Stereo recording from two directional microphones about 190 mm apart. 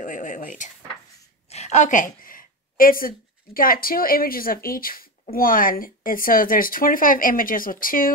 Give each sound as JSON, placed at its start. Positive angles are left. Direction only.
{"t": 0.0, "sound": "a woman's voice", "side_deg": 40}